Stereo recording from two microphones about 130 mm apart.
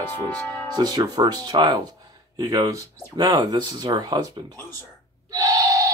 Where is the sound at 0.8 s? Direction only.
30° right (ahead or behind).